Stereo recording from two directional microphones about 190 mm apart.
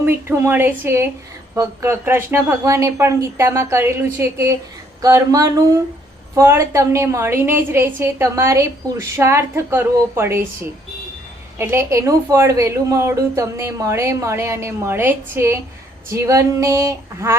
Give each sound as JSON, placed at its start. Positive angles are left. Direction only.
{"t": 0.0, "sound": "a woman's voice", "side_deg": -10}
{"t": 11.5, "sound": "a woman's voice", "side_deg": -15}